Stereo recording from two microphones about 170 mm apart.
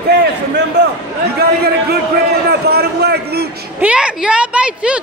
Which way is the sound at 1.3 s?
65° right (ahead or behind).